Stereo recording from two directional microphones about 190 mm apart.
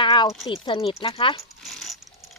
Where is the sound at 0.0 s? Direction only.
25° left (ahead or behind).